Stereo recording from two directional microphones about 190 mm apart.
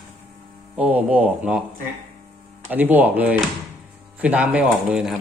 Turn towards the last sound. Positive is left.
turn(degrees=0)  # may be behind; listen again after turning